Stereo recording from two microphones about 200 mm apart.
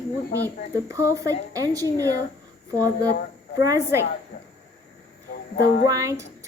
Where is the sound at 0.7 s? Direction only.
15° right (ahead or behind).